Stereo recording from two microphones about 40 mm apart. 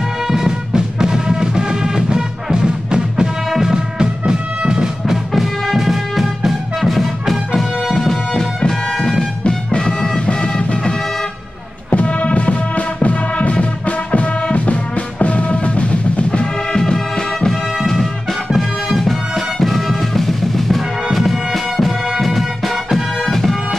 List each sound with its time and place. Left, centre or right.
0.3 s music: centre
3.4 s music: centre
10.2 s music: left
11.9 s music: left; by 17.6 s centre
18.6 s music: centre
23.2 s bagpipes: centre